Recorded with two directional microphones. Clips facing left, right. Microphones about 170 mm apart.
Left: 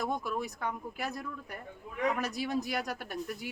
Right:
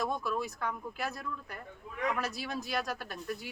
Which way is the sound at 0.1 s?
15° left (ahead or behind).